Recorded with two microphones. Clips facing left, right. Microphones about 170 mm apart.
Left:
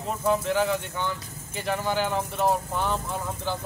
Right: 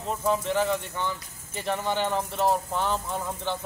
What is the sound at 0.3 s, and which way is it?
Speech, centre (ahead or behind).